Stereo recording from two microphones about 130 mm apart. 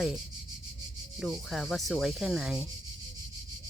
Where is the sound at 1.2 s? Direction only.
Centre (ahead or behind).